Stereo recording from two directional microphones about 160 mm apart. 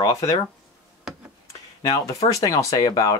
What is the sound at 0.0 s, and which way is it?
Speech, 20° left (ahead or behind).